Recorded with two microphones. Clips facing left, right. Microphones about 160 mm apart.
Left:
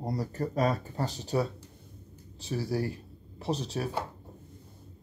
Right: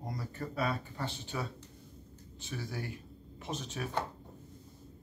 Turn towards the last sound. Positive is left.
turn(degrees=35)  # may be behind; listen again after turning